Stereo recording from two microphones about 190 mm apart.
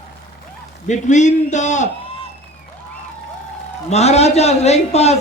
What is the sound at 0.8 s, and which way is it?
A man's voice, 40° left (ahead or behind).